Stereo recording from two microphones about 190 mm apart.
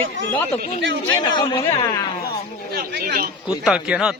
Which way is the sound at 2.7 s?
55° right (ahead or behind).